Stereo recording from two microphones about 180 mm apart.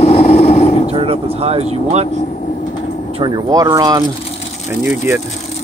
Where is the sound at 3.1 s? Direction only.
25° right (ahead or behind).